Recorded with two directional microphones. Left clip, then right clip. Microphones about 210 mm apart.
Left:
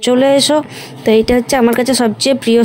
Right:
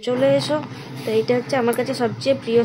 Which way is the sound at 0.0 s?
45° left (ahead or behind).